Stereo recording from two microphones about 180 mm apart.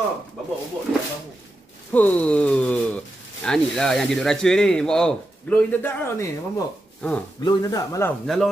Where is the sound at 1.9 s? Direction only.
10° left (ahead or behind).